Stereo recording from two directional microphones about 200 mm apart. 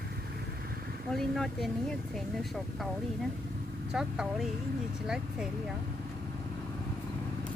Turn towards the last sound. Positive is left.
turn(degrees=-5)  # may be behind; listen again after turning